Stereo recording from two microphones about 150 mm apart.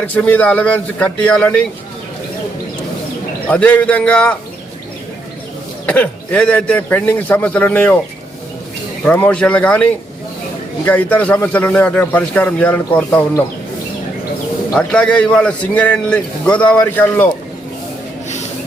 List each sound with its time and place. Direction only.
0.1 s a man's voice: 10° left (ahead or behind)
3.5 s a man's voice: 10° left (ahead or behind)
5.8 s a man's voice: 10° left (ahead or behind)
9.0 s a man's voice: 10° left (ahead or behind)
14.8 s a man's voice: 10° left (ahead or behind)